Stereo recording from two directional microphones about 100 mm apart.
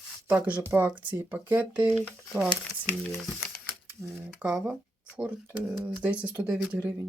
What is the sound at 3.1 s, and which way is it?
Speech, centre (ahead or behind).